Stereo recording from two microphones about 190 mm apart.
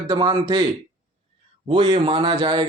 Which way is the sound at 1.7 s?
30° right (ahead or behind).